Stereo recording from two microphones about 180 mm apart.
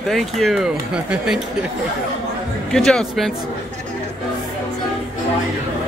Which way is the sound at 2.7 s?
5° left (ahead or behind).